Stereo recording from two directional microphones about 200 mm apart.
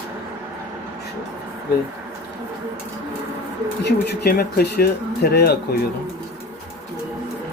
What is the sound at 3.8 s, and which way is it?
Speech, 55° left (ahead or behind).